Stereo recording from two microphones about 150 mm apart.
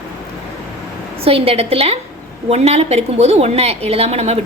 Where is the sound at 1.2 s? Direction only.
40° right (ahead or behind).